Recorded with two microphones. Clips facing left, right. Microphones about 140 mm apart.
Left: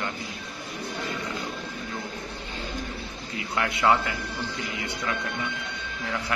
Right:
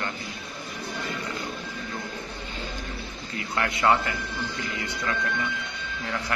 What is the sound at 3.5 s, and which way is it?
Speech, 10° left (ahead or behind).